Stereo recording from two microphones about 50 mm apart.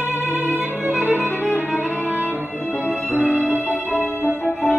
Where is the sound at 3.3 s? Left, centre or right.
Left.